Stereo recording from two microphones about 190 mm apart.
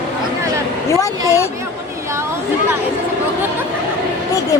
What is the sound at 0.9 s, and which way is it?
Speech, 15° left (ahead or behind).